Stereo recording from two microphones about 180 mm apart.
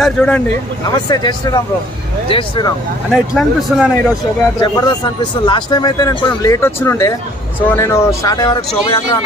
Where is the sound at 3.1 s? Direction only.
Centre (ahead or behind).